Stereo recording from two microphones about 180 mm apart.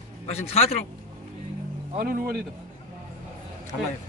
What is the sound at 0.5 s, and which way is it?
Speech, 35° left (ahead or behind).